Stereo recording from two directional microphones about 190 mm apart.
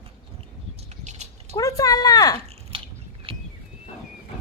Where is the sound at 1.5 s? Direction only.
20° left (ahead or behind).